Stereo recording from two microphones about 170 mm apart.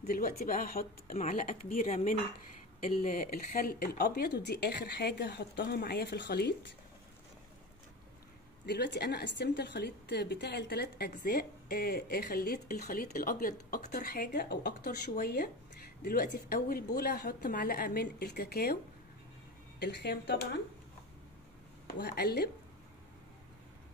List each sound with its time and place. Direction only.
0.1 s a woman's voice: 60° left (ahead or behind); by 6.5 s 85° left
8.6 s a woman's voice: 80° left; by 18.8 s 65° left (ahead or behind)
19.8 s speech: 80° left
21.9 s speech: 65° left (ahead or behind)